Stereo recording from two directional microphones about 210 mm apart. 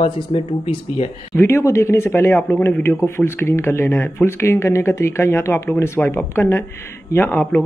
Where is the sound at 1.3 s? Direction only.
10° left (ahead or behind).